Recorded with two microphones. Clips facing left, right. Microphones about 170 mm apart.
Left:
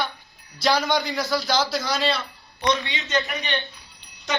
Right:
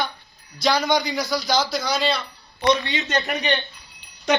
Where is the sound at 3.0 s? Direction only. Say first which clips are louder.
Left 1 dB; 60° right (ahead or behind).